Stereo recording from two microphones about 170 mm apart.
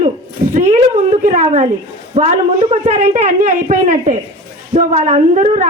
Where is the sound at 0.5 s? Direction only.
45° right (ahead or behind).